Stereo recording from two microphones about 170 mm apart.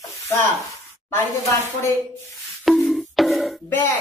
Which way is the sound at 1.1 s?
15° left (ahead or behind).